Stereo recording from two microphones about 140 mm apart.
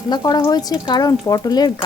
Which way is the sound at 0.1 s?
30° left (ahead or behind).